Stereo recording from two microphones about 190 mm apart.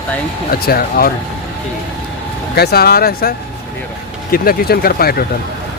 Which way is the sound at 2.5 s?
55° left (ahead or behind).